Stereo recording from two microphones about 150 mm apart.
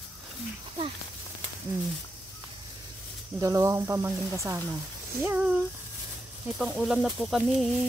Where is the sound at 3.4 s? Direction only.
20° right (ahead or behind); by 7.7 s centre (ahead or behind).